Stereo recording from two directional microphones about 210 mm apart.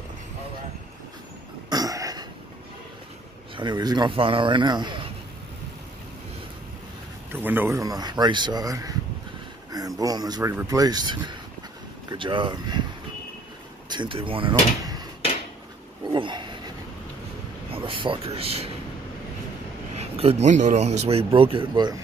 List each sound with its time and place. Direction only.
1.7 s throat clearing: 15° right (ahead or behind)
3.5 s speech: 20° right (ahead or behind)
7.3 s speech: 10° right (ahead or behind)
13.8 s speech: 20° right (ahead or behind)
16.1 s a sound: 20° right (ahead or behind)
17.6 s speech: 25° right (ahead or behind)
20.0 s speech: 30° right (ahead or behind)